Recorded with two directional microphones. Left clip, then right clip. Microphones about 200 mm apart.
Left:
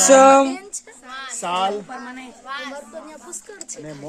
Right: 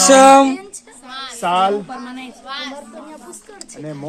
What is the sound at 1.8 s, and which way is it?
Speech, 10° right (ahead or behind).